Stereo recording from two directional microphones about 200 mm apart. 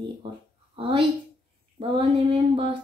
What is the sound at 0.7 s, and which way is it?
Speech, 25° right (ahead or behind).